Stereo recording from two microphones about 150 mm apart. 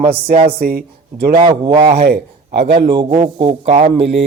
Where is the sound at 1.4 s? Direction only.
30° right (ahead or behind).